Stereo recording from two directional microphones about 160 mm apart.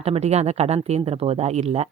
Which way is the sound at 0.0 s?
40° right (ahead or behind).